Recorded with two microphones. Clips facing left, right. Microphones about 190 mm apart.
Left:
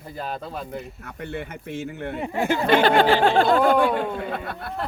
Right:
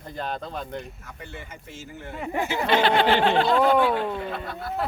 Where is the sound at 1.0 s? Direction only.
60° left (ahead or behind).